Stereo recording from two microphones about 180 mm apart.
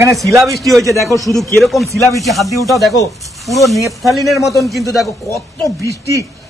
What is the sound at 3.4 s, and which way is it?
Snake, centre (ahead or behind).